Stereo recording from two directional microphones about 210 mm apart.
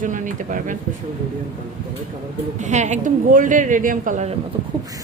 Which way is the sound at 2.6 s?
35° right (ahead or behind).